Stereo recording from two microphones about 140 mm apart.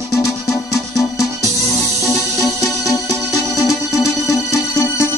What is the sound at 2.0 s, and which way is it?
Music, 25° left (ahead or behind).